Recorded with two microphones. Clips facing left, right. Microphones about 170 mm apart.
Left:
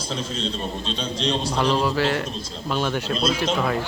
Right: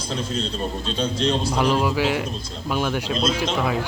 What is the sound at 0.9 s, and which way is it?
Speech, 45° right (ahead or behind).